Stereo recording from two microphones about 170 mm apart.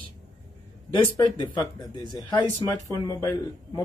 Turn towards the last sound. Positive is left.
turn(degrees=15)  # may be behind; listen again after turning